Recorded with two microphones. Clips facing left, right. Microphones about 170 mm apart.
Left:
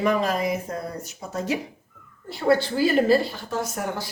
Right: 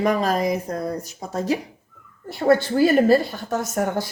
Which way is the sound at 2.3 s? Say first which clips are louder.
Right 3 dB; 50° right (ahead or behind).